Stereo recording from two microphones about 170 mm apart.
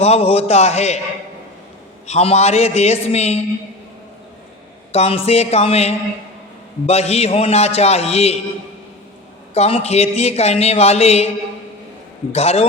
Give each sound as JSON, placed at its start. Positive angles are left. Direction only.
{"t": 0.0, "sound": "a man's voice", "side_deg": 35}
{"t": 2.0, "sound": "a man's voice", "side_deg": 40}
{"t": 4.9, "sound": "a man's voice", "side_deg": 35}
{"t": 9.6, "sound": "a man's voice", "side_deg": 35}
{"t": 12.3, "sound": "a man's voice", "side_deg": 35}